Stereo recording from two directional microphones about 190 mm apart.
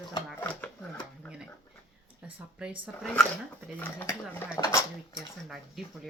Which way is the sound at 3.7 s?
10° left (ahead or behind).